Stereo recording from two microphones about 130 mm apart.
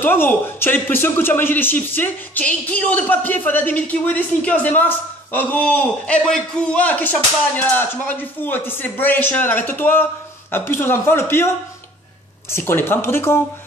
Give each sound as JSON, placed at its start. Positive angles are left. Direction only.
{"t": 0.0, "sound": "speech", "side_deg": 15}